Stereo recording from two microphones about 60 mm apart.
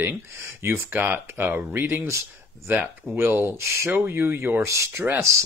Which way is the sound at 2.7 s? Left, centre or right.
Right.